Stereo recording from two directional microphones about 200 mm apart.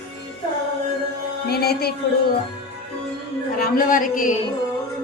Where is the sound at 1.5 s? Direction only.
50° left (ahead or behind).